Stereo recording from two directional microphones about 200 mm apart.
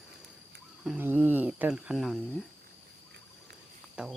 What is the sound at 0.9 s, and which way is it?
Speech, 10° right (ahead or behind).